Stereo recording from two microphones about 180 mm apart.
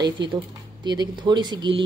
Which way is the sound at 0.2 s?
70° right (ahead or behind).